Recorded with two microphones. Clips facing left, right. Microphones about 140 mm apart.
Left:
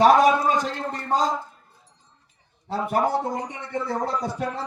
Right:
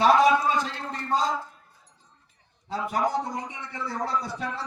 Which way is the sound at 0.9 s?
45° left (ahead or behind).